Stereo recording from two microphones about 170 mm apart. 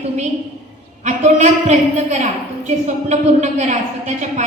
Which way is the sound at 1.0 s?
40° right (ahead or behind).